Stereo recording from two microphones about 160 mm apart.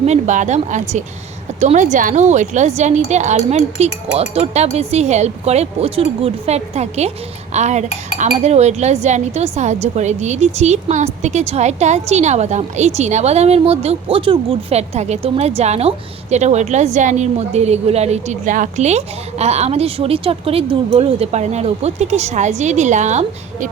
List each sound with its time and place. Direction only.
0.0 s speech: 45° right (ahead or behind)